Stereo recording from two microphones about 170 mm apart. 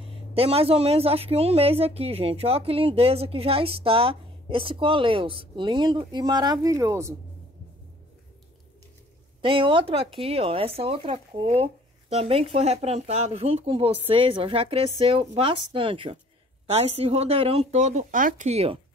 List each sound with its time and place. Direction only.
0.3 s a woman's voice: 35° right (ahead or behind); by 7.2 s 15° right (ahead or behind)
9.4 s a woman's voice: 30° right (ahead or behind); by 18.5 s 50° right (ahead or behind)
18.5 s a woman's voice: 35° right (ahead or behind)